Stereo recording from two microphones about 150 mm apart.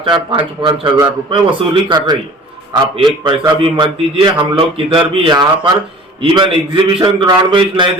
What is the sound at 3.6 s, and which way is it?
A man's voice, 35° right (ahead or behind).